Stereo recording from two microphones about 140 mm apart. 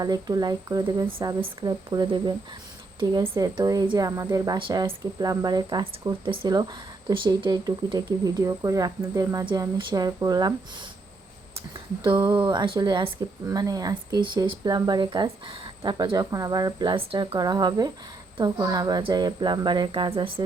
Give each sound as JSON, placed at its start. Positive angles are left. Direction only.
{"t": 0.0, "sound": "speech", "side_deg": -25}
{"t": 12.0, "sound": "speech", "side_deg": -35}